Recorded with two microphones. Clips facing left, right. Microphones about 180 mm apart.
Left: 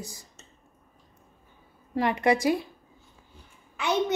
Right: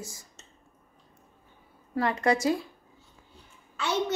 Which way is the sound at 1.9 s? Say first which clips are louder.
Left 2 dB; 15° left (ahead or behind).